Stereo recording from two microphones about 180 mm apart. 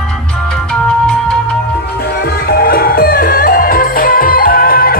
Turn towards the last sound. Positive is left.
turn(degrees=55)  # may be behind; listen again after turning